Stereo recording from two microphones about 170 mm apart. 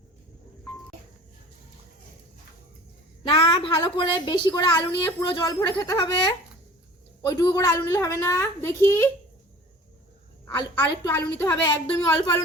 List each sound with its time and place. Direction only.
3.2 s a woman's voice: 30° left (ahead or behind); by 9.0 s 15° left (ahead or behind)
10.4 s a woman's voice: 20° left (ahead or behind)